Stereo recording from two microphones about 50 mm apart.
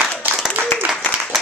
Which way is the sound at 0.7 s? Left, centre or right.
Left.